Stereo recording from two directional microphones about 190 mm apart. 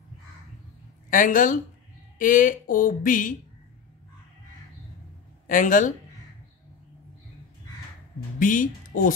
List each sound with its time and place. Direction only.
1.1 s speech: 45° left (ahead or behind)
5.5 s speech: 45° left (ahead or behind)
8.4 s a woman's voice: 45° left (ahead or behind)